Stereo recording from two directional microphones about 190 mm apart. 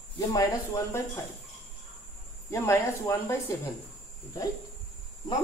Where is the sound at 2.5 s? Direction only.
15° left (ahead or behind).